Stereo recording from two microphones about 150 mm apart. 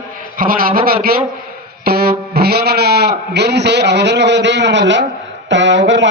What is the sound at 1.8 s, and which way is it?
Music, 90° right.